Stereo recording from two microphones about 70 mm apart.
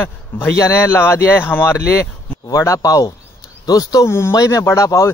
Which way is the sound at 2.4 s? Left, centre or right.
Left.